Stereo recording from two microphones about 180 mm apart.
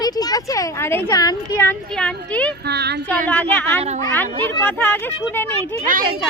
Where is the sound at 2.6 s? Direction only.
65° right (ahead or behind).